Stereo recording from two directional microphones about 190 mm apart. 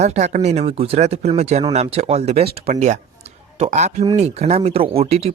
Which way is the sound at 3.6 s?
40° right (ahead or behind).